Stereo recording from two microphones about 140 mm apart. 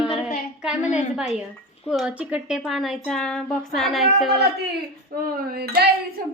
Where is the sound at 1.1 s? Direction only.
5° right (ahead or behind).